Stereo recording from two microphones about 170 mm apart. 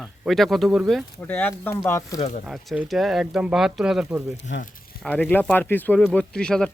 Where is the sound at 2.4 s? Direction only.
5° right (ahead or behind).